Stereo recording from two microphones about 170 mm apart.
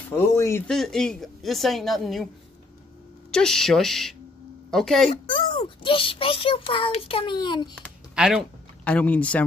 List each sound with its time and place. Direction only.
0.1 s speech: 15° left (ahead or behind)
0.7 s a woman's voice: centre (ahead or behind)
3.3 s a woman's voice: 5° left (ahead or behind)
5.2 s a child's voice: 30° left (ahead or behind)
8.1 s speech: 5° right (ahead or behind)